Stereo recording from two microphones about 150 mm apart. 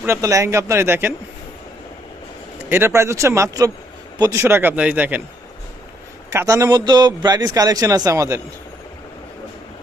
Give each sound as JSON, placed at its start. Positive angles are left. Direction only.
{"t": 0.0, "sound": "speech", "side_deg": -20}
{"t": 2.6, "sound": "a man's voice", "side_deg": -15}
{"t": 6.3, "sound": "a man's voice", "side_deg": -20}